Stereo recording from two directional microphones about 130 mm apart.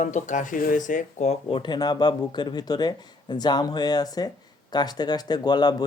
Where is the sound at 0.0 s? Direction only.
65° left (ahead or behind).